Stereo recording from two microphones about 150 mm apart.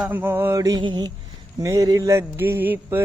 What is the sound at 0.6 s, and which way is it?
Mantra, 25° right (ahead or behind).